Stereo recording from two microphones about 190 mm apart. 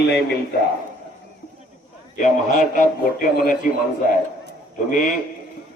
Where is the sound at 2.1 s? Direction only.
40° left (ahead or behind).